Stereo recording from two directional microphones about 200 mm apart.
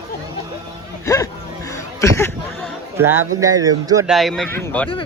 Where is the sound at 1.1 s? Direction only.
15° left (ahead or behind).